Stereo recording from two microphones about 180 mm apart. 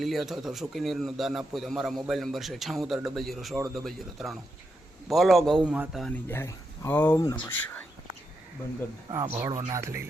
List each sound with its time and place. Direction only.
0.0 s speech: centre (ahead or behind)
6.2 s speech: 15° left (ahead or behind)
9.1 s speech: 15° right (ahead or behind)